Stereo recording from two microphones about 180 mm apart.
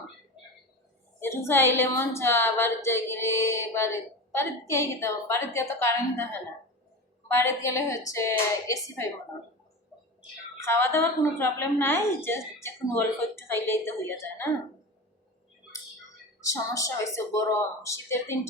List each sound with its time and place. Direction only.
1.2 s a woman's voice: 15° left (ahead or behind)
7.3 s a woman's voice: 15° left (ahead or behind)
10.6 s a woman's voice: 15° left (ahead or behind)
16.4 s a woman's voice: 15° left (ahead or behind)